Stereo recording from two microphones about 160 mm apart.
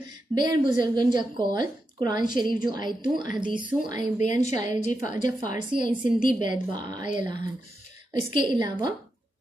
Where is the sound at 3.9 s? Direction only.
50° left (ahead or behind).